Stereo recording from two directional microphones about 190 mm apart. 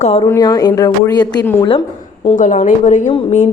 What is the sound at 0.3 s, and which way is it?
A woman's voice, 20° left (ahead or behind).